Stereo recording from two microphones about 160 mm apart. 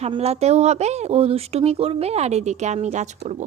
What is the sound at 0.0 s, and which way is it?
Speech, 40° right (ahead or behind).